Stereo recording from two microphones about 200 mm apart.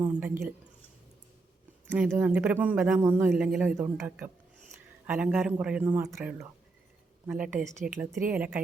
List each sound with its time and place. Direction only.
0.1 s speech: 5° right (ahead or behind)
1.9 s speech: 10° right (ahead or behind)